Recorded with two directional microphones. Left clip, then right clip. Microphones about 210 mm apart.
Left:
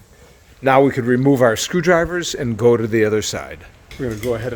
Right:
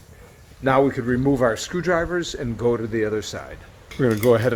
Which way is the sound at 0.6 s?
45° left (ahead or behind).